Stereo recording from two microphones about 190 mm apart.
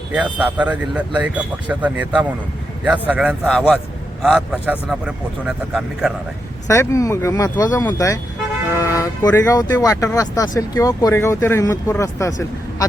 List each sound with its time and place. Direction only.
0.2 s speech: 10° right (ahead or behind)
3.1 s speech: 5° right (ahead or behind)
6.7 s speech: 15° left (ahead or behind)